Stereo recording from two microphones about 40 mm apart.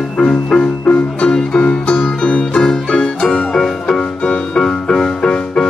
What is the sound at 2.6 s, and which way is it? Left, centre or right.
Music, centre.